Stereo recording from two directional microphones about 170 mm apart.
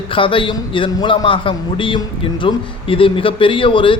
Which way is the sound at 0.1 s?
30° left (ahead or behind).